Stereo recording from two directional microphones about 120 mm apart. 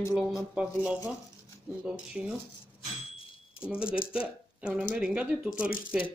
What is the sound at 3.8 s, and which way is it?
Speech, 10° right (ahead or behind).